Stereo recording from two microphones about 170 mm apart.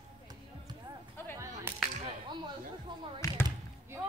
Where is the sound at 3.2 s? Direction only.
20° left (ahead or behind).